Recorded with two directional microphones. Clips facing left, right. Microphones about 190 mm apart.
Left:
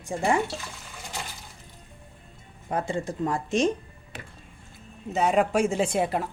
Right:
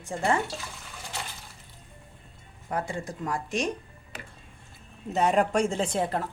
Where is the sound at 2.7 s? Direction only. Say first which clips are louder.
Left 3 dB; 25° left (ahead or behind).